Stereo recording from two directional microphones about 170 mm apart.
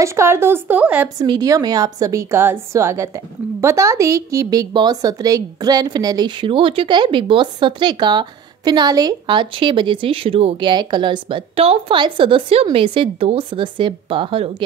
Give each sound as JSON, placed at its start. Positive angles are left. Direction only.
{"t": 0.0, "sound": "a woman's voice", "side_deg": -15}
{"t": 1.0, "sound": "a woman's voice", "side_deg": -25}